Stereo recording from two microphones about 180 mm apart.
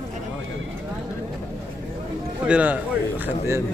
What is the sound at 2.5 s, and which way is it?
A man's voice, 10° right (ahead or behind).